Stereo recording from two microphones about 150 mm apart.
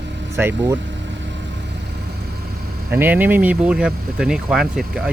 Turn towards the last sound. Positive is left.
turn(degrees=-5)  # may be behind; listen again after turning